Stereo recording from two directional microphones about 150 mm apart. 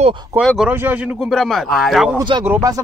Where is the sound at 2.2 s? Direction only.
30° right (ahead or behind).